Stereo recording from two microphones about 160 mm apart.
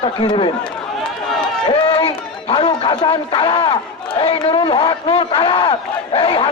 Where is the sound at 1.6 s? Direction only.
25° left (ahead or behind).